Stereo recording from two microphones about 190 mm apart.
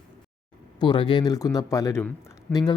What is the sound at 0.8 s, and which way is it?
Speech, 25° left (ahead or behind).